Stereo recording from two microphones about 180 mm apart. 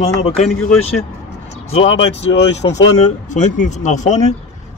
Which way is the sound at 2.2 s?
35° left (ahead or behind).